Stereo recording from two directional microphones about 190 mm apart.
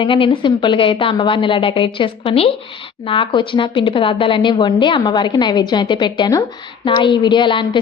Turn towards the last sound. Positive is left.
turn(degrees=25)  # may be behind; listen again after turning